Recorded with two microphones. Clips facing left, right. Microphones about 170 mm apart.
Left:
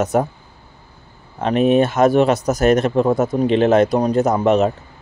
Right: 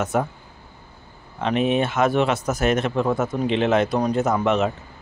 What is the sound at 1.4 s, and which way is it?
Speech, 40° left (ahead or behind).